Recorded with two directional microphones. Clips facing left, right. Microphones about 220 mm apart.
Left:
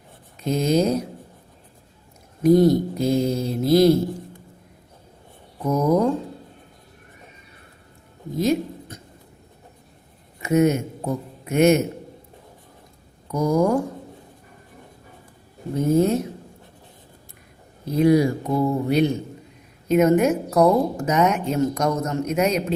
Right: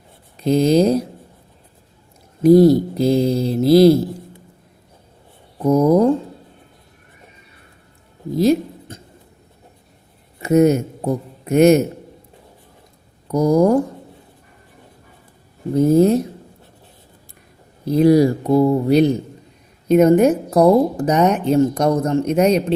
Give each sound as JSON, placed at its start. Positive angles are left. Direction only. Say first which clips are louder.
{"t": 0.3, "sound": "speech", "louder": "right 6 dB", "side_deg": -35}
{"t": 2.4, "sound": "speech", "louder": "right 5 dB", "side_deg": -30}
{"t": 5.6, "sound": "speech", "louder": "right 6 dB", "side_deg": -30}
{"t": 8.4, "sound": "a sound", "louder": "right 5 dB", "side_deg": -35}
{"t": 10.4, "sound": "a man's voice", "louder": "right 5 dB", "side_deg": -35}
{"t": 13.3, "sound": "speech", "louder": "right 5 dB", "side_deg": -35}
{"t": 15.7, "sound": "speech", "louder": "right 6 dB", "side_deg": -35}
{"t": 17.8, "sound": "speech", "louder": "right 5 dB", "side_deg": -35}